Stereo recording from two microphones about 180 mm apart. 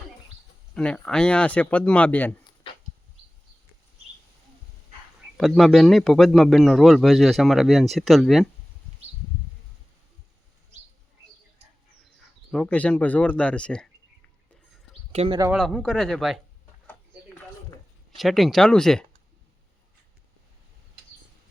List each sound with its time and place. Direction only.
0.7 s speech: 5° left (ahead or behind)
5.4 s a man's voice: centre (ahead or behind)
12.5 s speech: 5° left (ahead or behind)
15.1 s speech: 35° right (ahead or behind)
15.5 s a man's voice: centre (ahead or behind)
18.2 s a man's voice: centre (ahead or behind)